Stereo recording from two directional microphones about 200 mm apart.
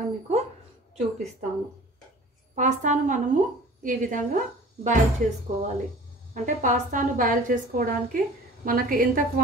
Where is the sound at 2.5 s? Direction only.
40° right (ahead or behind).